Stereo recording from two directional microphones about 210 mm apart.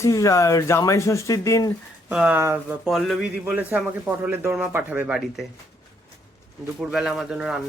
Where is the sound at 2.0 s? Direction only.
5° right (ahead or behind).